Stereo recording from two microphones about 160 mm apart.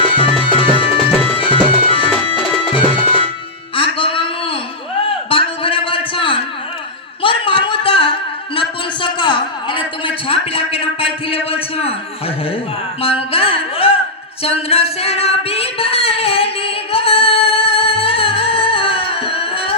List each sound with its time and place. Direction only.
0.0 s music: 35° left (ahead or behind)
3.8 s a sound: 35° left (ahead or behind)
13.0 s music: 35° left (ahead or behind)
14.4 s singing: 40° left (ahead or behind)